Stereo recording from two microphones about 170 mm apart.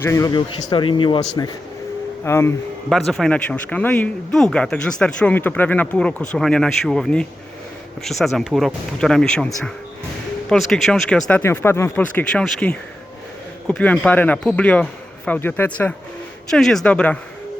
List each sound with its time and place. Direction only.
0.0 s a man's voice: 20° left (ahead or behind)
2.2 s speech: 15° left (ahead or behind)
3.1 s speech: 5° left (ahead or behind)